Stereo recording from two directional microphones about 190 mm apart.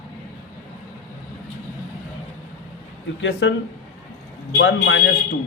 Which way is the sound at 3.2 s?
70° left (ahead or behind).